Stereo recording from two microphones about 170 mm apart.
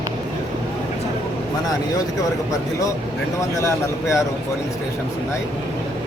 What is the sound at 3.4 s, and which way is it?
Speech, 15° left (ahead or behind).